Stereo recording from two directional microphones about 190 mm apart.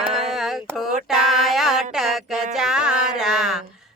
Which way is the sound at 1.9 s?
Centre (ahead or behind).